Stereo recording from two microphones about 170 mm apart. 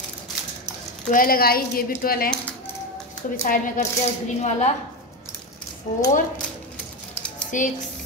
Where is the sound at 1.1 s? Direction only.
60° left (ahead or behind).